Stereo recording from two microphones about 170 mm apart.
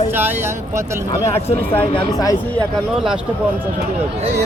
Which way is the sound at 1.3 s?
35° left (ahead or behind).